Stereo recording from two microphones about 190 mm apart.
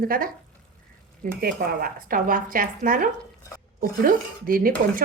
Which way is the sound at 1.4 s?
50° right (ahead or behind).